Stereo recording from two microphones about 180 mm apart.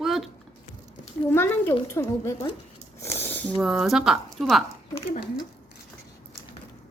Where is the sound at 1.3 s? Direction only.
10° left (ahead or behind).